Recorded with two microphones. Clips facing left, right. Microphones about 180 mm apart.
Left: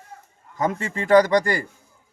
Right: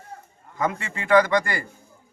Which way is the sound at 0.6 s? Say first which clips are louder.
Left 2 dB; 40° left (ahead or behind).